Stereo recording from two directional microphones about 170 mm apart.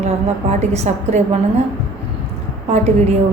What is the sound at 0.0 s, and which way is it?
A woman's voice, 40° right (ahead or behind).